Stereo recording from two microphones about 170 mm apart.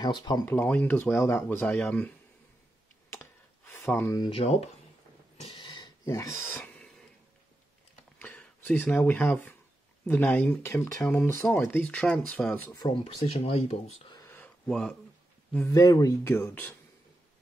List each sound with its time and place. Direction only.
0.0 s speech: 25° left (ahead or behind)
0.6 s speech: 10° left (ahead or behind)
3.1 s clicking: 15° left (ahead or behind)
4.3 s speech: 35° left (ahead or behind)
5.4 s a sound: 30° left (ahead or behind); by 6.9 s 15° left (ahead or behind)
8.2 s speech: 10° left (ahead or behind)
12.7 s speech: 25° left (ahead or behind)
13.3 s speech: 35° left (ahead or behind)
14.1 s a sound: 15° left (ahead or behind)
14.7 s speech: 5° left (ahead or behind)
15.7 s speech: 20° left (ahead or behind)